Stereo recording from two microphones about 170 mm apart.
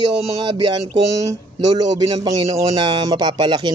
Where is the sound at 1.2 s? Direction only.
20° right (ahead or behind).